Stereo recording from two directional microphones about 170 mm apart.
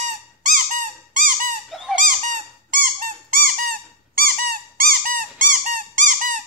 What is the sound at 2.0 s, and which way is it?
Squeak, 50° right (ahead or behind).